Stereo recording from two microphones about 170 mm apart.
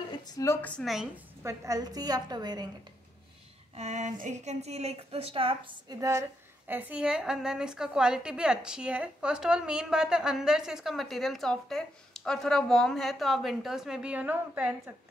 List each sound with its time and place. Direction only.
0.2 s a woman's voice: 20° left (ahead or behind)
0.6 s a woman's voice: 5° left (ahead or behind)
1.4 s a woman's voice: 15° right (ahead or behind)
3.7 s a woman's voice: 40° right (ahead or behind); by 15.0 s 10° right (ahead or behind)